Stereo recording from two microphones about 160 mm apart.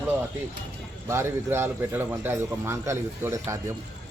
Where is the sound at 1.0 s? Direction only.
15° right (ahead or behind).